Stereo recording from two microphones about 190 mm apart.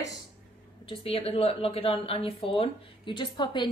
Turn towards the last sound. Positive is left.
turn(degrees=25)  # may be behind; listen again after turning